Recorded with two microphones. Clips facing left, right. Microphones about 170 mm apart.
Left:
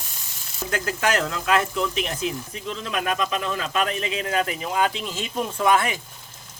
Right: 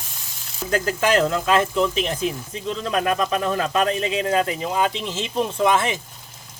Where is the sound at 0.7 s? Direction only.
35° right (ahead or behind).